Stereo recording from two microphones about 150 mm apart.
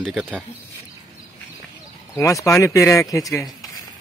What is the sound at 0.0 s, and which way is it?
Speech, 5° left (ahead or behind).